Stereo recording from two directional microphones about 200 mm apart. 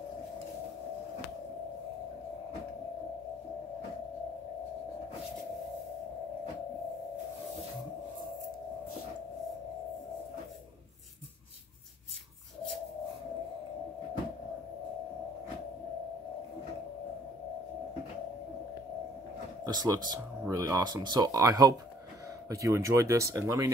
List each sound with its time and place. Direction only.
19.6 s speech: 20° right (ahead or behind)